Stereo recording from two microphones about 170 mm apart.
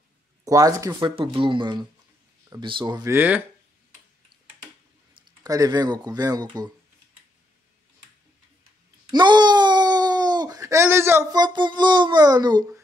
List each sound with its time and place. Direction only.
0.5 s speech: 20° right (ahead or behind)
5.4 s speech: 20° right (ahead or behind)
9.1 s a sound: 25° right (ahead or behind)